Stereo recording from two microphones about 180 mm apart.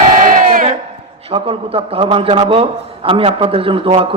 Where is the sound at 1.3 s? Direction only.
30° right (ahead or behind).